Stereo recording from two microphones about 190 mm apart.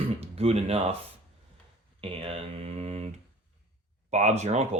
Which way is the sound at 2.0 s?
30° right (ahead or behind).